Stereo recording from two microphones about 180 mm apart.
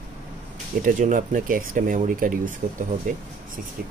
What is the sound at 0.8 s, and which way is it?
Speech, 45° right (ahead or behind).